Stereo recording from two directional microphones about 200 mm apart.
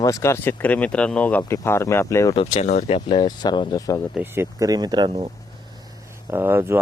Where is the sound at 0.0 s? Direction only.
15° left (ahead or behind).